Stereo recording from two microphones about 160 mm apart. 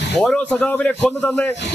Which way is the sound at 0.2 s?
5° left (ahead or behind).